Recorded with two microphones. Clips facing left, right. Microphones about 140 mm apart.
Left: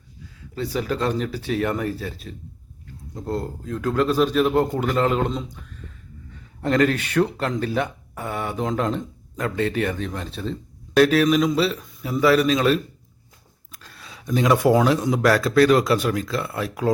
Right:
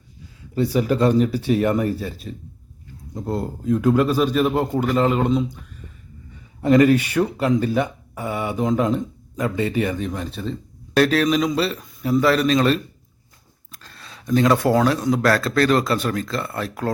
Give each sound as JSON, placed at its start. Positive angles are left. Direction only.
{"t": 0.5, "sound": "speech", "side_deg": -10}